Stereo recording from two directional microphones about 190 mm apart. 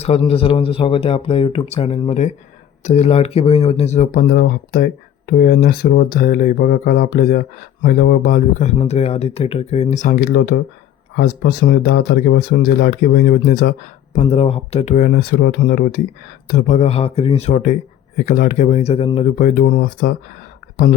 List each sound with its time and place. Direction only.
0.0 s speech: 30° left (ahead or behind); by 14.2 s 50° left (ahead or behind)
14.2 s speech: 30° left (ahead or behind); by 16.0 s 55° left (ahead or behind)
16.5 s speech: 40° left (ahead or behind)